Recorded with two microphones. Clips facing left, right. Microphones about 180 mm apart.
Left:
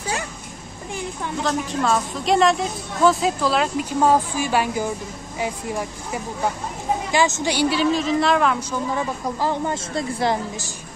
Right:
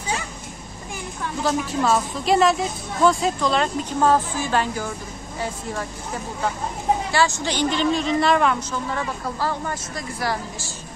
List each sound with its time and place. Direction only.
1.4 s a woman's voice: 5° right (ahead or behind); by 7.5 s 20° left (ahead or behind)
7.5 s a woman's voice: 5° left (ahead or behind)
8.7 s a woman's voice: 15° left (ahead or behind)